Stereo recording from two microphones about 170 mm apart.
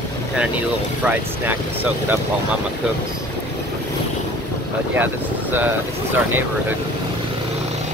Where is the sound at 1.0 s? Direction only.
10° right (ahead or behind).